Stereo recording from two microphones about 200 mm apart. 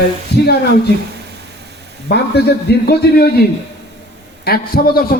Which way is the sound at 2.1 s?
55° left (ahead or behind).